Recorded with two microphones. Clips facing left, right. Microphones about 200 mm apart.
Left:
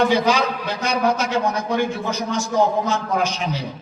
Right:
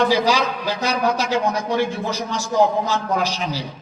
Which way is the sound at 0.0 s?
35° right (ahead or behind).